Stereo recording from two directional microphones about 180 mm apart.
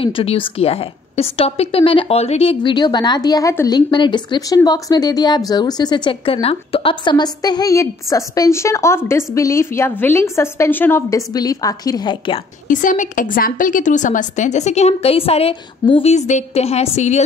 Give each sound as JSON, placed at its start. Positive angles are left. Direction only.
{"t": 0.0, "sound": "a woman's voice", "side_deg": 30}
{"t": 12.6, "sound": "a woman's voice", "side_deg": 45}